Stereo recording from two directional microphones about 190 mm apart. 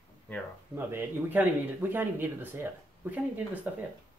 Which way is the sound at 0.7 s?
10° right (ahead or behind).